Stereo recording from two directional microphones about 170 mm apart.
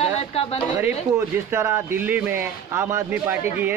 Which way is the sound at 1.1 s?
15° right (ahead or behind).